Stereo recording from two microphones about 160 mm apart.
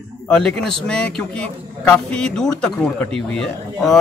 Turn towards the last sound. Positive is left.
turn(degrees=5)  # may be behind; listen again after turning